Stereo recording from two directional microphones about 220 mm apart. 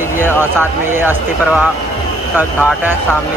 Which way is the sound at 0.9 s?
5° right (ahead or behind).